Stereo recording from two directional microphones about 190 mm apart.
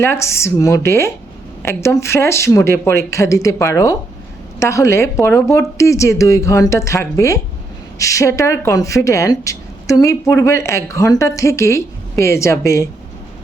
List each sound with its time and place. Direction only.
0.0 s speech: 15° left (ahead or behind)